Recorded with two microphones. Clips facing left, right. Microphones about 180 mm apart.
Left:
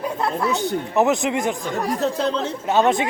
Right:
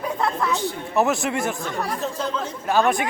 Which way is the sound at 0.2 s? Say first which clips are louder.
Left 2 dB; 10° left (ahead or behind).